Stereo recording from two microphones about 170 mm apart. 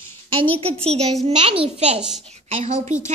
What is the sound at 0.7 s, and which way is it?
A child's voice, 35° right (ahead or behind).